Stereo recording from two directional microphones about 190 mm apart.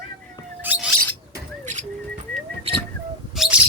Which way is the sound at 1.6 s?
40° right (ahead or behind).